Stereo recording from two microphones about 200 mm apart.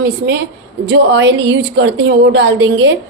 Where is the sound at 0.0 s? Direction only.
55° right (ahead or behind).